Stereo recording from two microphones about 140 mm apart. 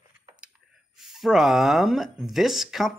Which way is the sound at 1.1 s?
5° right (ahead or behind).